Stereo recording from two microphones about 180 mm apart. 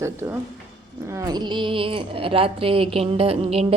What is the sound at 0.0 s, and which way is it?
Speech, 15° right (ahead or behind).